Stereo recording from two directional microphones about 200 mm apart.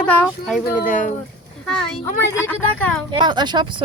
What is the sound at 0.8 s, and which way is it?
Speech, 40° left (ahead or behind).